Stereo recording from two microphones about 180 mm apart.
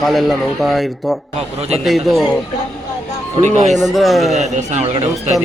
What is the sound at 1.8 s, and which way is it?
Speech, centre (ahead or behind).